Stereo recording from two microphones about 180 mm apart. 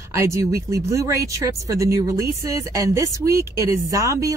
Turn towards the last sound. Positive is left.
turn(degrees=-20)  # may be behind; listen again after turning